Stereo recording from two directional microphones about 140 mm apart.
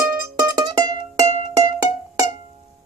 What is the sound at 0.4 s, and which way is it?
Music, 30° right (ahead or behind).